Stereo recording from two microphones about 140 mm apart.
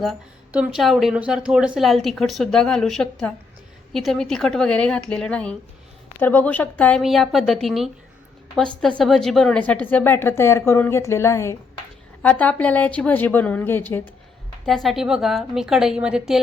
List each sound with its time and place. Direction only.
0.5 s a woman's voice: 10° right (ahead or behind); by 7.0 s 10° left (ahead or behind)
7.0 s a woman's voice: centre (ahead or behind); by 11.5 s 20° left (ahead or behind)
12.2 s a woman's voice: 10° left (ahead or behind)
14.7 s speech: centre (ahead or behind)